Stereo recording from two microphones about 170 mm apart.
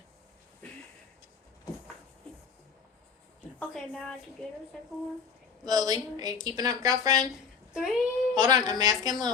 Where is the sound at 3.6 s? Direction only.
5° left (ahead or behind).